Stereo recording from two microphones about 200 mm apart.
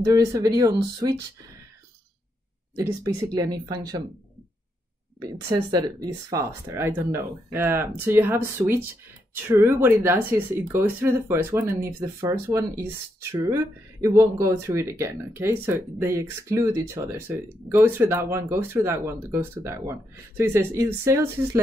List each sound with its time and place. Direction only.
0.0 s speech: 15° right (ahead or behind)
2.7 s speech: 15° right (ahead or behind)
5.2 s speech: 20° right (ahead or behind)